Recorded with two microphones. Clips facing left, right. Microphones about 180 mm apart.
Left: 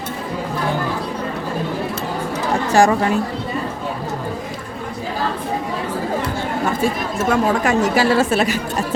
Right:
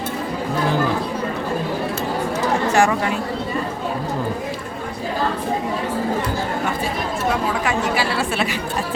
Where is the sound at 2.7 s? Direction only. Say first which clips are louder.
Left 6 dB; 35° left (ahead or behind).